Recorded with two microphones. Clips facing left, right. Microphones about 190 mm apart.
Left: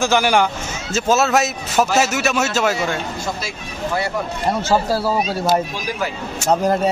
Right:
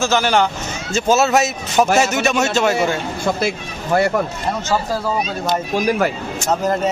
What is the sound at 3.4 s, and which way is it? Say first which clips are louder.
Speech: right 4 dB; 50° right (ahead or behind).